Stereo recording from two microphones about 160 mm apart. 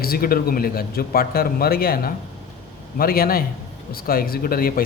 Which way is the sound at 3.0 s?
65° left (ahead or behind).